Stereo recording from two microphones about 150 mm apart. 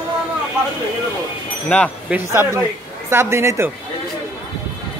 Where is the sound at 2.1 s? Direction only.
15° right (ahead or behind).